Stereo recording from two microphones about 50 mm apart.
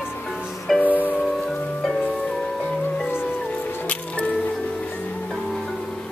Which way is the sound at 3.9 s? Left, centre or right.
Left.